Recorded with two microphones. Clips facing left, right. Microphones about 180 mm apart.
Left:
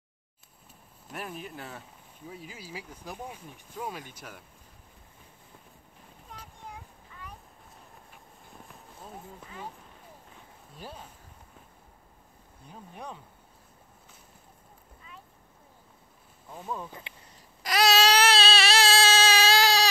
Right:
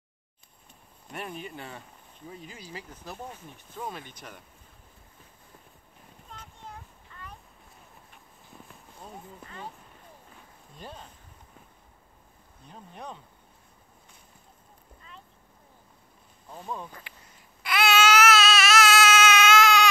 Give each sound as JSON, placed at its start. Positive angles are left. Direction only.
{"t": 1.0, "sound": "speech", "side_deg": 0}
{"t": 6.4, "sound": "a sound", "side_deg": 10}
{"t": 8.6, "sound": "a sound", "side_deg": 0}
{"t": 10.8, "sound": "speech", "side_deg": 5}
{"t": 12.6, "sound": "speech", "side_deg": 10}
{"t": 16.5, "sound": "speech", "side_deg": 0}
{"t": 17.6, "sound": "baby cry", "side_deg": 35}